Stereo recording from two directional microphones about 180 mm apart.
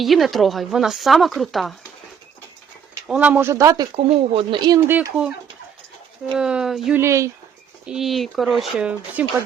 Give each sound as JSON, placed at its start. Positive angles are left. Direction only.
{"t": 0.0, "sound": "speech", "side_deg": 0}
{"t": 3.1, "sound": "speech", "side_deg": -5}
{"t": 3.9, "sound": "speech", "side_deg": -30}
{"t": 6.3, "sound": "speech", "side_deg": -5}
{"t": 7.0, "sound": "speech", "side_deg": -15}
{"t": 7.9, "sound": "speech", "side_deg": 0}